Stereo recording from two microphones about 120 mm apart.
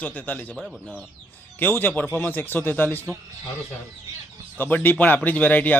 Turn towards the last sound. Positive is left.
turn(degrees=15)  # may be behind; listen again after turning